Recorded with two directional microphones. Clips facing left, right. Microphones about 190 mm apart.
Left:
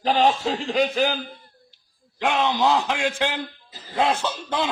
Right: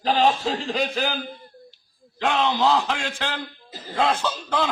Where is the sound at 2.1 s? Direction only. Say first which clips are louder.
Even; 10° left (ahead or behind).